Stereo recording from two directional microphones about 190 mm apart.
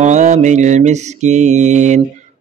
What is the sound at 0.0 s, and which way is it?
Speech, 40° right (ahead or behind).